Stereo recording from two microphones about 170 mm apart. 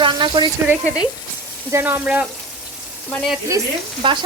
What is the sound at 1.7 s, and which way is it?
Speech, 10° right (ahead or behind).